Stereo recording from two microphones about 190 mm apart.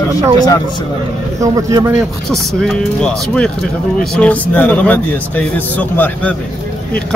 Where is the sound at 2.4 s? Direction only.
Centre (ahead or behind).